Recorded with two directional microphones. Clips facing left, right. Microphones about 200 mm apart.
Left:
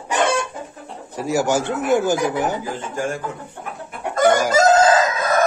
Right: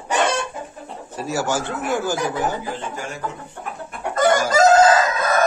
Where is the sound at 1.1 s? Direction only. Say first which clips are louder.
Left 4 dB; 15° left (ahead or behind).